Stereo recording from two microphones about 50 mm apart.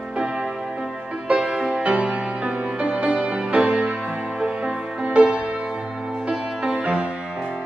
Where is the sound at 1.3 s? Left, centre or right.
Centre.